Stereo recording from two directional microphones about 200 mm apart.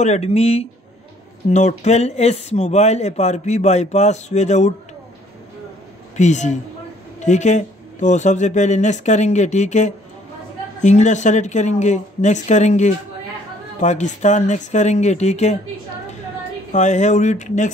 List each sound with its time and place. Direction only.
0.0 s speech: 35° left (ahead or behind)
6.1 s speech: 35° left (ahead or behind)
16.7 s speech: 35° left (ahead or behind)